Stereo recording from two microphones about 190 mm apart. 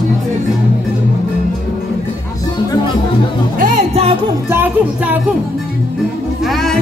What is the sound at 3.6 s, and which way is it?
Music, 35° right (ahead or behind).